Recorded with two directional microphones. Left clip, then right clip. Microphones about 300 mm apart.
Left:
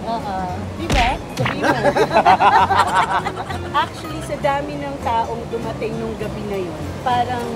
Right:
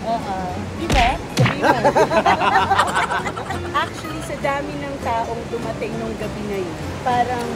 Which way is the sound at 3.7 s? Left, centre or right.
Centre.